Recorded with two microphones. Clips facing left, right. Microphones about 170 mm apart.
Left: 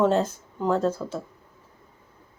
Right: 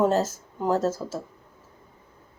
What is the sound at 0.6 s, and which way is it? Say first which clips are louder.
Speech: even; 5° right (ahead or behind).